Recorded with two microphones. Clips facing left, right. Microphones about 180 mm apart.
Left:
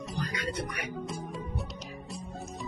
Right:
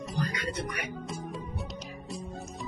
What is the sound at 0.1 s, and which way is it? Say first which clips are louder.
Music: right 2 dB; centre (ahead or behind).